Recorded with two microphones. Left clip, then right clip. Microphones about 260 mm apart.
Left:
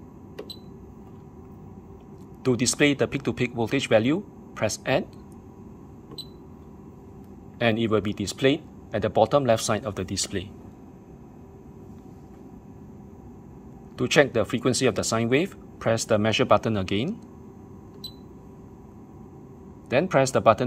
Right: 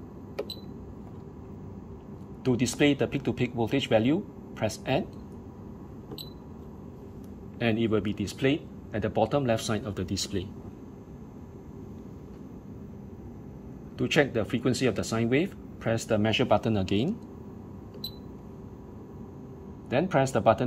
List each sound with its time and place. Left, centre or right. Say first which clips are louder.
2.4 s speech: left 3 dB; centre
7.5 s speech: left 4 dB; centre
13.9 s speech: left 5 dB; left
19.9 s speech: left 4 dB; centre